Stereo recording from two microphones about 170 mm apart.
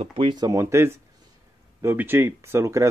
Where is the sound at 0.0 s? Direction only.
30° right (ahead or behind).